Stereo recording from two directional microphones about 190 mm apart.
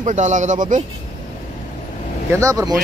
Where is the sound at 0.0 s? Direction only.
40° right (ahead or behind).